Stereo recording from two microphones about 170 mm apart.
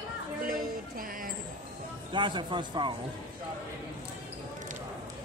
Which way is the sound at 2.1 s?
25° right (ahead or behind).